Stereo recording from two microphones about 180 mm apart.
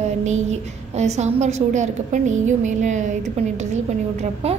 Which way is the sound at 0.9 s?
40° right (ahead or behind).